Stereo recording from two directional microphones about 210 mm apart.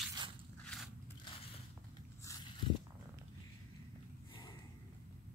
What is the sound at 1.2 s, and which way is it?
Biting, 25° left (ahead or behind).